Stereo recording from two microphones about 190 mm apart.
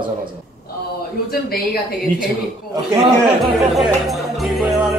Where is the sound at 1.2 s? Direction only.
55° left (ahead or behind).